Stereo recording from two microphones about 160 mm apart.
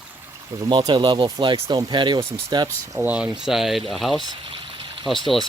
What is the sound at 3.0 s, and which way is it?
Speech, 5° right (ahead or behind).